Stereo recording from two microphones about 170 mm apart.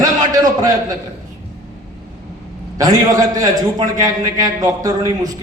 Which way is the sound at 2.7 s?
20° right (ahead or behind).